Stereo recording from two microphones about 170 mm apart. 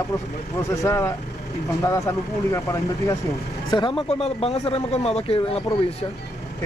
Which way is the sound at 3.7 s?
30° left (ahead or behind).